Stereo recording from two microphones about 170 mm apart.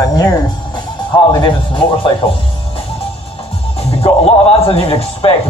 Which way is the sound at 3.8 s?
35° left (ahead or behind).